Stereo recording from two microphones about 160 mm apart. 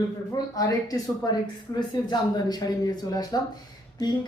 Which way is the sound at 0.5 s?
20° left (ahead or behind).